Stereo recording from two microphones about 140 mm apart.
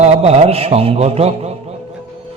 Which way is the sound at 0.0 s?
50° right (ahead or behind).